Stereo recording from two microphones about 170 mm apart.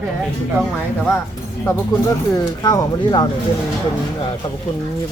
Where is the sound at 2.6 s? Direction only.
25° left (ahead or behind).